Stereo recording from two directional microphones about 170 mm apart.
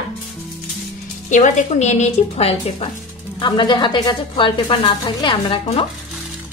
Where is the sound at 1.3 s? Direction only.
45° left (ahead or behind).